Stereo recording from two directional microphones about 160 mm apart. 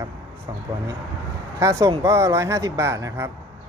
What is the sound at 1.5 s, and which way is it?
Speech, 20° right (ahead or behind).